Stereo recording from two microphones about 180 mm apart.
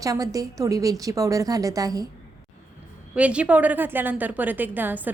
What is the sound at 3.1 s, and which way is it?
A woman's voice, 5° right (ahead or behind).